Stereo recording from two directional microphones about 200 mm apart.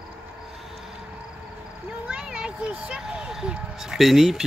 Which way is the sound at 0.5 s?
Centre (ahead or behind).